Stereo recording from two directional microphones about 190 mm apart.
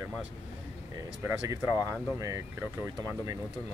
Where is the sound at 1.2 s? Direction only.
15° right (ahead or behind).